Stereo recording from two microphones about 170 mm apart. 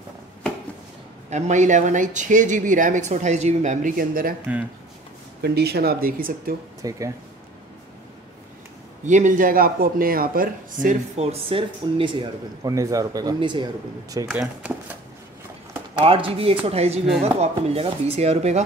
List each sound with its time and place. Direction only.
1.3 s speech: 45° right (ahead or behind)
5.4 s speech: 70° right (ahead or behind)
6.8 s speech: 20° right (ahead or behind)
9.0 s speech: 45° right (ahead or behind)
11.3 s speech: 30° right (ahead or behind)
15.9 s speech: 35° right (ahead or behind)